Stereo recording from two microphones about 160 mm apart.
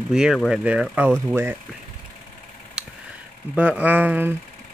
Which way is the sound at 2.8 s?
5° right (ahead or behind).